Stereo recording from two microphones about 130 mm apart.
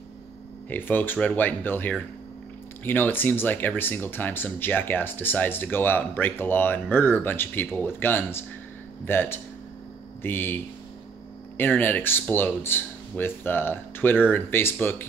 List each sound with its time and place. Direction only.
0.7 s speech: 15° left (ahead or behind)